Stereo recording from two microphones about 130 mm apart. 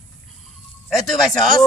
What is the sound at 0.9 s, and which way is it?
Speech, centre (ahead or behind).